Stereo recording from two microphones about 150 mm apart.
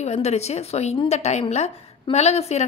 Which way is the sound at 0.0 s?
45° left (ahead or behind).